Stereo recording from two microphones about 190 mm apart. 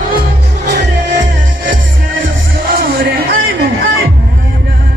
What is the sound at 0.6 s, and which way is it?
Music, 65° right (ahead or behind).